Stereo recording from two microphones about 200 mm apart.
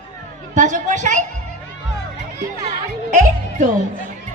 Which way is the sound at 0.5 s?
35° right (ahead or behind).